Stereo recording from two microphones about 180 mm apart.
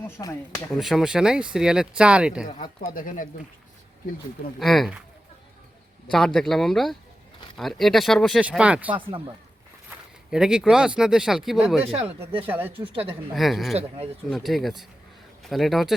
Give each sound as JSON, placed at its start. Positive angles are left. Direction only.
{"t": 0.2, "sound": "speech", "side_deg": 15}
{"t": 0.7, "sound": "speech", "side_deg": 0}
{"t": 2.6, "sound": "speech", "side_deg": 50}
{"t": 4.6, "sound": "speech", "side_deg": 0}
{"t": 6.1, "sound": "speech", "side_deg": 5}
{"t": 9.0, "sound": "speech", "side_deg": -30}
{"t": 10.3, "sound": "speech", "side_deg": -5}
{"t": 12.7, "sound": "speech", "side_deg": -30}
{"t": 13.3, "sound": "speech", "side_deg": 0}